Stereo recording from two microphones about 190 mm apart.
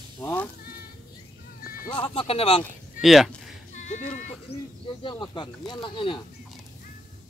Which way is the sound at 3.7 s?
40° left (ahead or behind).